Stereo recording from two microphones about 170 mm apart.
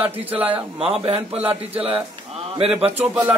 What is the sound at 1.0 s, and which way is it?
Speech, 35° right (ahead or behind).